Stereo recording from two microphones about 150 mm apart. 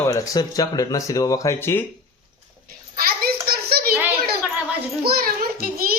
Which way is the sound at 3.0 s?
80° right.